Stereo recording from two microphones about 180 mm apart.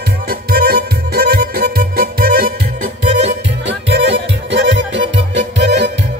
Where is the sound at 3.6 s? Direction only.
75° right (ahead or behind).